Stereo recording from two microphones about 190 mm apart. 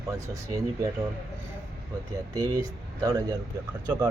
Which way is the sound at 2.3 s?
20° right (ahead or behind).